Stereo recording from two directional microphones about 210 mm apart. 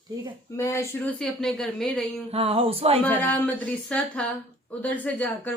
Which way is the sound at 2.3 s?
25° right (ahead or behind).